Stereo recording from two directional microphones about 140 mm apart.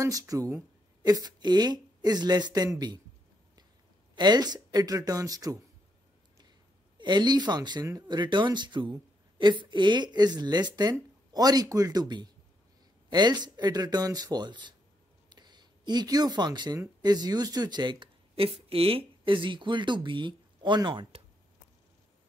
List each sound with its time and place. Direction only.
0.0 s speech: 25° right (ahead or behind)
4.1 s speech: 30° right (ahead or behind)
7.0 s speech: 30° right (ahead or behind)
15.2 s a sound: 30° right (ahead or behind)
17.0 s speech: 30° right (ahead or behind)
18.3 s speech: 45° right (ahead or behind)